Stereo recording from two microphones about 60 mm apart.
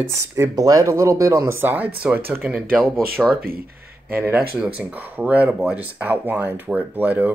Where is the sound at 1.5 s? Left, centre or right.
Right.